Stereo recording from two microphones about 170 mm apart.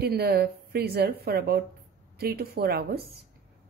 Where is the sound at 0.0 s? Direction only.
65° right (ahead or behind).